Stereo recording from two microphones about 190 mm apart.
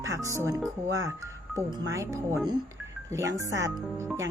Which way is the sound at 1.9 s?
15° right (ahead or behind).